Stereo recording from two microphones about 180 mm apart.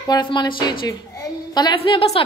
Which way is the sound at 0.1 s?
25° left (ahead or behind).